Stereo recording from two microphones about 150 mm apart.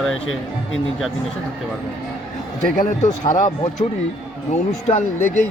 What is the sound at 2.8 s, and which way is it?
Speech, 55° left (ahead or behind).